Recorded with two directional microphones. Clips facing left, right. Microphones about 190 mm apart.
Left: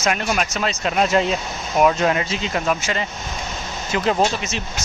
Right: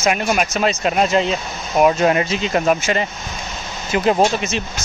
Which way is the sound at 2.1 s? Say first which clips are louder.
Right 4 dB; 45° right (ahead or behind).